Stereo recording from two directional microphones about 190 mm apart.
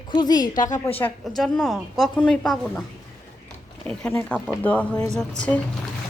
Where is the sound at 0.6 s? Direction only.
40° left (ahead or behind).